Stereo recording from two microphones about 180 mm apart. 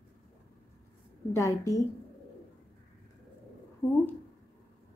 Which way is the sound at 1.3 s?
15° left (ahead or behind).